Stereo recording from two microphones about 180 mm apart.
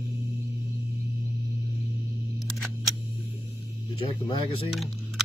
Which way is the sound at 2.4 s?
Centre (ahead or behind).